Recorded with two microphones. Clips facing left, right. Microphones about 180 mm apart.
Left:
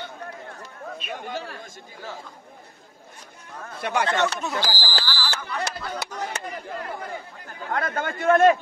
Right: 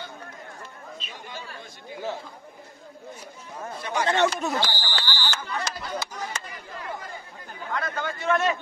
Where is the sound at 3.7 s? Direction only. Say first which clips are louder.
Left 4 dB; 60° left (ahead or behind).